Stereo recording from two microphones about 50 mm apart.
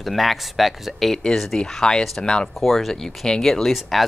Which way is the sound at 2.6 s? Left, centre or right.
Centre.